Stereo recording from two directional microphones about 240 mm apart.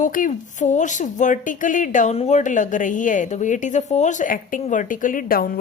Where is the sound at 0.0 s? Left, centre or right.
Left.